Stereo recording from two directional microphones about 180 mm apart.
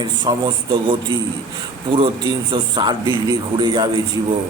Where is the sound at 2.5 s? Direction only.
25° right (ahead or behind).